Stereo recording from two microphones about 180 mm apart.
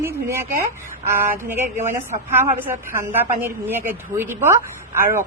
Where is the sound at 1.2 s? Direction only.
10° right (ahead or behind).